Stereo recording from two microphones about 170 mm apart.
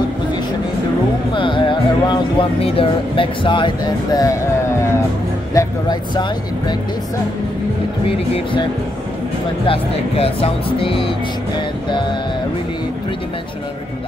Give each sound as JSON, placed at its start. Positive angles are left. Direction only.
{"t": 1.3, "sound": "music", "side_deg": 30}
{"t": 2.6, "sound": "speech", "side_deg": 35}
{"t": 9.7, "sound": "speech", "side_deg": 35}